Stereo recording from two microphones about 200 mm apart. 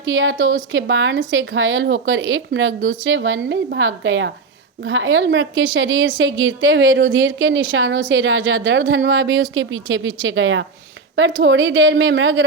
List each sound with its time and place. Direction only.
0.0 s a woman's voice: 75° right (ahead or behind)